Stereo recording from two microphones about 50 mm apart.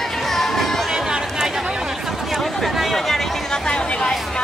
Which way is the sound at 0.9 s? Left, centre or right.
Centre.